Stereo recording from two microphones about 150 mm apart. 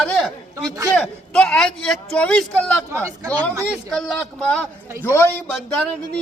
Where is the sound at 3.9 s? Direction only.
Centre (ahead or behind).